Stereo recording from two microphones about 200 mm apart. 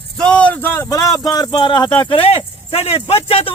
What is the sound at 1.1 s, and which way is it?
Speech, 20° left (ahead or behind).